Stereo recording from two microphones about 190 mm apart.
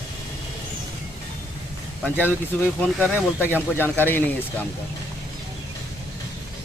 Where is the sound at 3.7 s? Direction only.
10° left (ahead or behind).